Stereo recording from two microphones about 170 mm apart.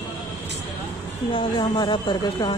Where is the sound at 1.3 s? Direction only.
25° left (ahead or behind).